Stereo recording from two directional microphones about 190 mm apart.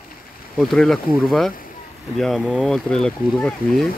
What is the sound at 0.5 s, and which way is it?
Speech, centre (ahead or behind).